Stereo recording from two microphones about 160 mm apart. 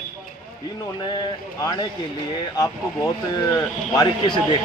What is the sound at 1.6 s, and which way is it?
Speech, 25° left (ahead or behind).